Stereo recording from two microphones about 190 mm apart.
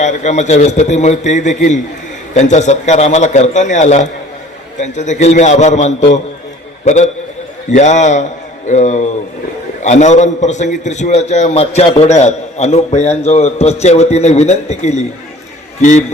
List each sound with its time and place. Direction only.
0.0 s a man's voice: 40° left (ahead or behind)